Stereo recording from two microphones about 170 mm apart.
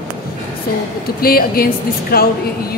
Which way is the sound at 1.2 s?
60° left (ahead or behind).